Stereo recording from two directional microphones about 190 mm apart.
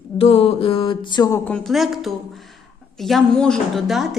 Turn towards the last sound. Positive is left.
turn(degrees=0)  # may be behind; listen again after turning